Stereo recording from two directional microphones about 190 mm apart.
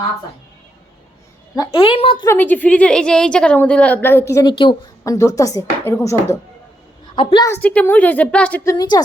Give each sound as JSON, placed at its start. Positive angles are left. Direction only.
{"t": 1.5, "sound": "a woman's voice", "side_deg": 25}
{"t": 2.2, "sound": "a woman's voice", "side_deg": 10}
{"t": 8.7, "sound": "a woman's voice", "side_deg": 20}